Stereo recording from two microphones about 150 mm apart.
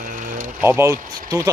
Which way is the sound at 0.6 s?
15° right (ahead or behind).